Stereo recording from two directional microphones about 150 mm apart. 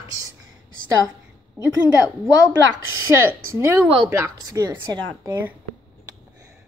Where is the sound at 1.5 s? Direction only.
20° right (ahead or behind).